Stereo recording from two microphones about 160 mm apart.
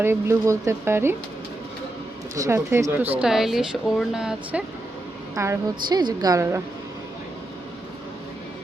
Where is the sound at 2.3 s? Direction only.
20° right (ahead or behind).